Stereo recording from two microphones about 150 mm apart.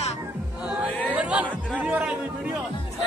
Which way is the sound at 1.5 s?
10° left (ahead or behind).